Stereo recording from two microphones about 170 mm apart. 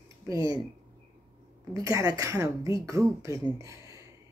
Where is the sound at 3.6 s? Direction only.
20° right (ahead or behind).